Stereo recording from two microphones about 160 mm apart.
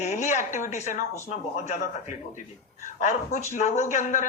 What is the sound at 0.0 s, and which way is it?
Speech, 45° left (ahead or behind).